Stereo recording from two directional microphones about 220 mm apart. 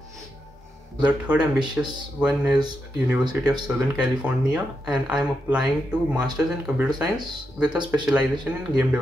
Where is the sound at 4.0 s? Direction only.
5° right (ahead or behind).